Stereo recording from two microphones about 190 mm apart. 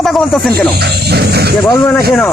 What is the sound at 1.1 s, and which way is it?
Speech, 60° right (ahead or behind).